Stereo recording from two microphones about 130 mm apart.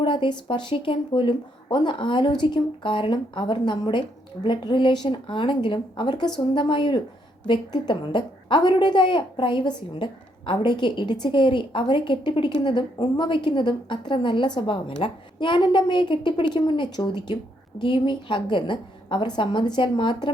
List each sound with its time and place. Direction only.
0.0 s a woman's voice: 40° left (ahead or behind)